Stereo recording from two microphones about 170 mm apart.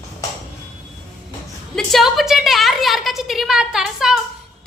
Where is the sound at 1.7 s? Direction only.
Centre (ahead or behind).